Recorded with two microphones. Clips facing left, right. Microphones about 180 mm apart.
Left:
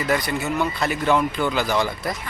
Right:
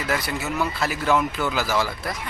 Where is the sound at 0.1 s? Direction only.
Centre (ahead or behind).